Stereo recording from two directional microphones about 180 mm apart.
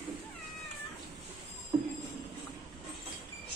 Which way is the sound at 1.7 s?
25° right (ahead or behind).